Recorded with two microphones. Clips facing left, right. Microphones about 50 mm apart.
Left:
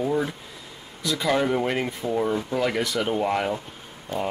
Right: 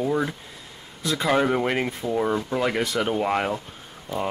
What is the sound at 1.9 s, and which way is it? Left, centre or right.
Speech, centre.